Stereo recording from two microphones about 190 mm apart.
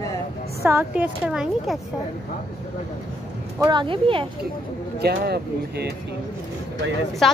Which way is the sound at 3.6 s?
25° right (ahead or behind).